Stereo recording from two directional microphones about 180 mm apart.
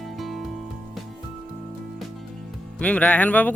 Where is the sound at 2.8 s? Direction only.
5° left (ahead or behind).